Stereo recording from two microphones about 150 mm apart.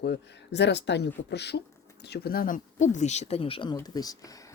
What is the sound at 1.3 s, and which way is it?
Speech, 90° left.